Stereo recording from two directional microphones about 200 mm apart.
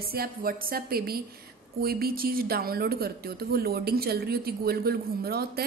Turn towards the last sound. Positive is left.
turn(degrees=-50)  # may be behind; listen again after turning